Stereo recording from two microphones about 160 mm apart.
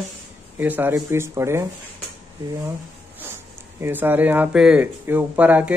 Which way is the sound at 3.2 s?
15° right (ahead or behind).